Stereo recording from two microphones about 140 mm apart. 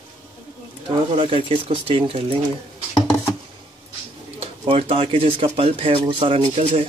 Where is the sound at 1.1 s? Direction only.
40° right (ahead or behind).